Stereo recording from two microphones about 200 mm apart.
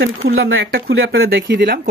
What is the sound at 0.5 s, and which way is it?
Speech, 50° right (ahead or behind).